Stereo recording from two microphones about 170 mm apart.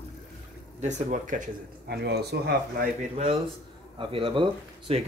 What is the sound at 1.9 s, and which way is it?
Speech, 75° right (ahead or behind).